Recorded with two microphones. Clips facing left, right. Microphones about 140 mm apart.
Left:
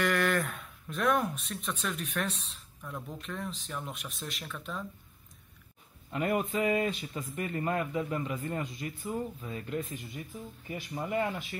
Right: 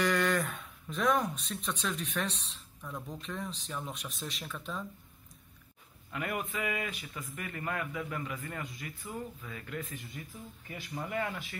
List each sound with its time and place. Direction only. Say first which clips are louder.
0.0 s speech: left 1 dB; centre (ahead or behind)
6.1 s speech: left 6 dB; 25° left (ahead or behind)